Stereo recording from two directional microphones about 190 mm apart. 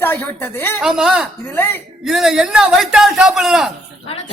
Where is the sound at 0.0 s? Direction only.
10° left (ahead or behind).